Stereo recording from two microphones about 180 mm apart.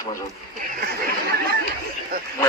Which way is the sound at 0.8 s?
60° right (ahead or behind).